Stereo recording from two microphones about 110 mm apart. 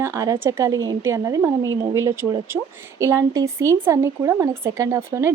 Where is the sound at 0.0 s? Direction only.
25° right (ahead or behind).